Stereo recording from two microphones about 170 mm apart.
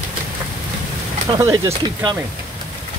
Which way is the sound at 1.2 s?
20° right (ahead or behind).